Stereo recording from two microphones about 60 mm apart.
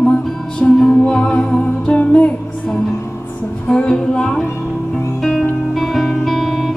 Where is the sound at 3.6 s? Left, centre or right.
Centre.